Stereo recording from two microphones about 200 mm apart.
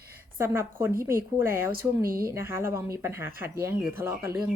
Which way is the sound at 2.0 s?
45° right (ahead or behind).